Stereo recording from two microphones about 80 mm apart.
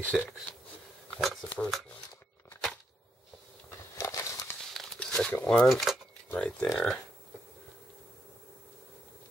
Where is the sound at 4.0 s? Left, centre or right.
Left.